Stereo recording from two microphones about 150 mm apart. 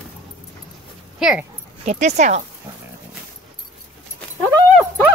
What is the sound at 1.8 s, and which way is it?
Speech, 50° right (ahead or behind).